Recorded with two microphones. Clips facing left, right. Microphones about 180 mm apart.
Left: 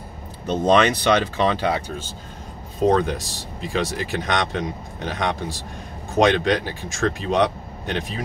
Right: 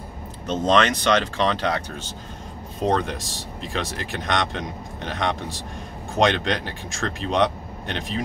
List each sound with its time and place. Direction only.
0.5 s speech: 10° left (ahead or behind)
2.9 s speech: centre (ahead or behind)